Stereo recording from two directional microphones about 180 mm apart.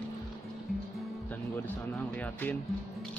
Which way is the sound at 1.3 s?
10° left (ahead or behind).